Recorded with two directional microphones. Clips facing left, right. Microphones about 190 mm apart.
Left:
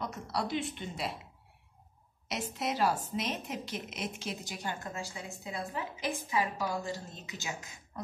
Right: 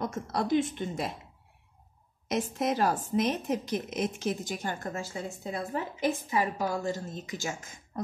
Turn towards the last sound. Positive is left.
turn(degrees=-45)  # may be behind; listen again after turning